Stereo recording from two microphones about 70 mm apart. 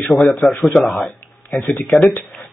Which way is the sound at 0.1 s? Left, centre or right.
Centre.